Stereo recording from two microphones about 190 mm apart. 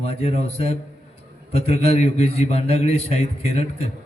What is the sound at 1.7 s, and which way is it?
Speech, 35° left (ahead or behind).